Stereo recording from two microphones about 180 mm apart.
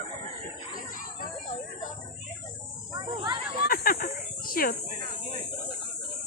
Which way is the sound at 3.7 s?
50° left (ahead or behind).